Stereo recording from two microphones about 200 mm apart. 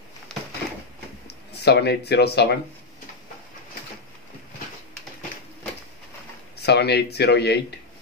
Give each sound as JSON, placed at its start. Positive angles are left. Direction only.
{"t": 1.2, "sound": "speech", "side_deg": 55}
{"t": 6.5, "sound": "speech", "side_deg": 55}